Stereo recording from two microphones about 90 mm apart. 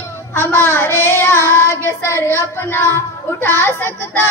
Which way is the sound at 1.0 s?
25° left (ahead or behind).